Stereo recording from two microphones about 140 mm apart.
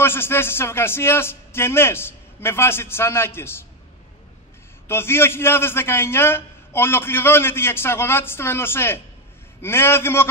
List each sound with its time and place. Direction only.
0.0 s a man's voice: 15° left (ahead or behind)
4.8 s a man's voice: 15° left (ahead or behind)